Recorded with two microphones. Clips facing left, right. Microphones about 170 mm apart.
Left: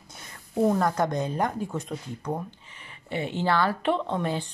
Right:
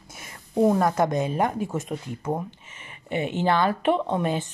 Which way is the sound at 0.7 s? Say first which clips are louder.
Right 3 dB; 20° right (ahead or behind).